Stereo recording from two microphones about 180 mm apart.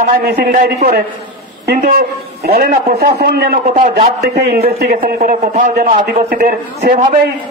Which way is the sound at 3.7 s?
40° right (ahead or behind).